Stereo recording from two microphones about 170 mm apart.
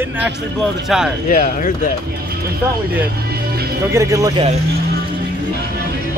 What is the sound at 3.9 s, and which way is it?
Speech, 20° right (ahead or behind).